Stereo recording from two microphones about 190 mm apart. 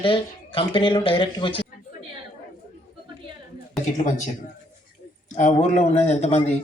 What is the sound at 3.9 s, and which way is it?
Speech, 40° left (ahead or behind).